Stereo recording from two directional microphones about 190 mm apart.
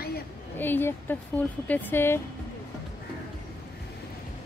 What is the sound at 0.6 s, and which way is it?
Speech, 10° left (ahead or behind).